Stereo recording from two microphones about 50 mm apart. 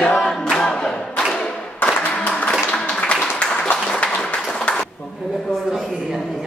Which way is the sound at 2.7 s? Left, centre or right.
Left.